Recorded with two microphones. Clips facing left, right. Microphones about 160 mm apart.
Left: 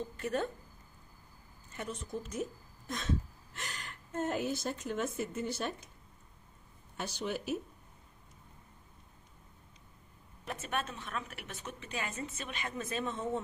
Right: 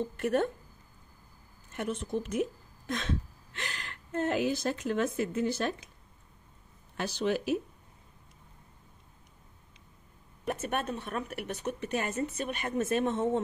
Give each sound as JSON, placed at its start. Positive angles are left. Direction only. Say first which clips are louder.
{"t": 0.2, "sound": "a woman's voice", "louder": "right 6 dB", "side_deg": -60}
{"t": 1.8, "sound": "a woman's voice", "louder": "right 7 dB", "side_deg": -70}
{"t": 2.9, "sound": "a sound", "louder": "right 2 dB", "side_deg": -75}
{"t": 3.6, "sound": "a woman's voice", "louder": "right 4 dB", "side_deg": -80}
{"t": 7.0, "sound": "a woman's voice", "louder": "right 7 dB", "side_deg": -90}
{"t": 10.4, "sound": "a woman's voice", "louder": "right 5 dB", "side_deg": -50}